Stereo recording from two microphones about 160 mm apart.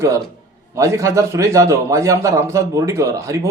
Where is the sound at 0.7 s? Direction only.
20° right (ahead or behind).